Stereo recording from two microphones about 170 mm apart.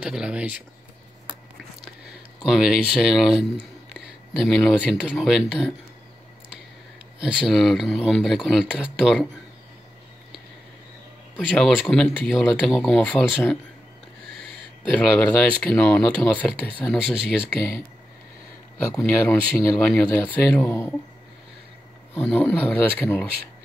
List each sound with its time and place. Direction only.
0.0 s speech: 5° right (ahead or behind)
2.4 s speech: 5° right (ahead or behind)
7.2 s speech: 5° right (ahead or behind)
11.3 s speech: centre (ahead or behind)
15.7 s speech: 10° left (ahead or behind)
18.8 s speech: 15° left (ahead or behind)
22.1 s speech: 10° left (ahead or behind)